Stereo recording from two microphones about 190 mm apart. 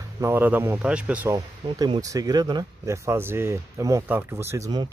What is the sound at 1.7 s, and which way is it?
Speech, 25° right (ahead or behind).